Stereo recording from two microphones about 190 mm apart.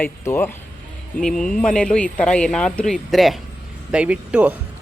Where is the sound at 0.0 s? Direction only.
10° left (ahead or behind).